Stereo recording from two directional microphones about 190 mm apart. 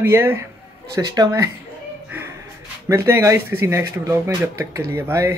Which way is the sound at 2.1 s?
10° right (ahead or behind).